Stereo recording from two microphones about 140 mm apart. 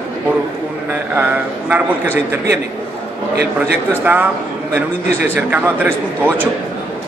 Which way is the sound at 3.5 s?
10° right (ahead or behind).